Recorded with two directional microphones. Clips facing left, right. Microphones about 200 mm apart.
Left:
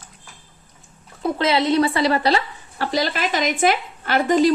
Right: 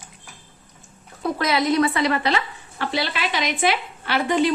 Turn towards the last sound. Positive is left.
turn(degrees=45)  # may be behind; listen again after turning